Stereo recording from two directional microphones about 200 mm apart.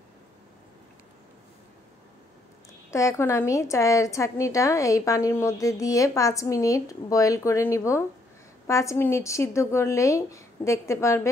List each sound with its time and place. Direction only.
2.9 s a woman's voice: 15° left (ahead or behind)